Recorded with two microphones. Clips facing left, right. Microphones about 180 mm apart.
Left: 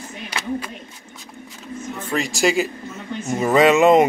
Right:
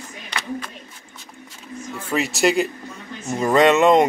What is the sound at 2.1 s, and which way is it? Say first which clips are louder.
Speech: right 1 dB; centre (ahead or behind).